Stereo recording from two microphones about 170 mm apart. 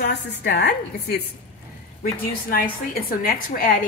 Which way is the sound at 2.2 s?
55° left (ahead or behind).